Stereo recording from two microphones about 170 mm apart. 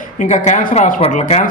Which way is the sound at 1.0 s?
40° left (ahead or behind).